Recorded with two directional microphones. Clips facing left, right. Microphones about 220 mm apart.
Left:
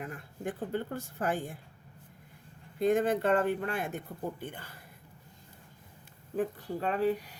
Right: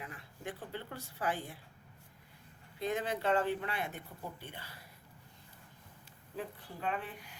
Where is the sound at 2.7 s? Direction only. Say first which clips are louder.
Left 9 dB; 50° left (ahead or behind).